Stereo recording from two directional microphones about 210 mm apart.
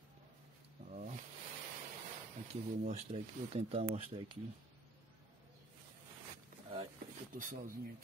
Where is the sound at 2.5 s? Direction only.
30° right (ahead or behind).